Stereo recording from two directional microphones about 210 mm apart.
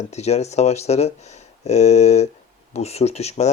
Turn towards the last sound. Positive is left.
turn(degrees=30)  # may be behind; listen again after turning